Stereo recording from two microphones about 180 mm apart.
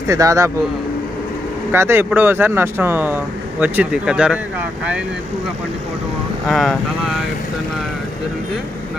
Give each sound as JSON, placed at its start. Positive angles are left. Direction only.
{"t": 0.1, "sound": "speech", "side_deg": -15}
{"t": 1.7, "sound": "speech", "side_deg": -15}
{"t": 6.5, "sound": "speech", "side_deg": 0}